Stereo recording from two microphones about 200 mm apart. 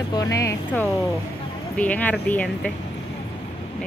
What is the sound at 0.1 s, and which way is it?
Speech, 15° left (ahead or behind).